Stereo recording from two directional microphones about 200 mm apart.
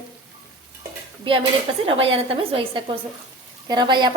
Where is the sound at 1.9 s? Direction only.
30° right (ahead or behind).